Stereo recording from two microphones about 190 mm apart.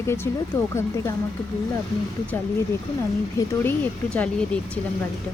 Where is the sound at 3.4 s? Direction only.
15° left (ahead or behind).